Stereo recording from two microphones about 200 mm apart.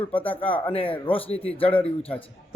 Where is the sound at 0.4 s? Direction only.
10° left (ahead or behind).